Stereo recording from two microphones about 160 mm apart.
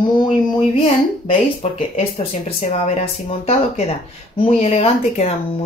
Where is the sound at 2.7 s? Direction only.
40° left (ahead or behind).